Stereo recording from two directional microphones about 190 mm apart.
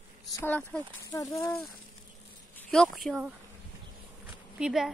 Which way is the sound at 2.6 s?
5° left (ahead or behind).